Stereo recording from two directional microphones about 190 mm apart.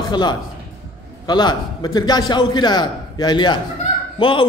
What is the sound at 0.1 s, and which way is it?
A man's voice, 25° left (ahead or behind).